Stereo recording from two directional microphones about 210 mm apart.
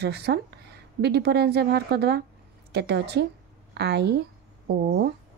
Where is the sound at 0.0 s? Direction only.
50° right (ahead or behind).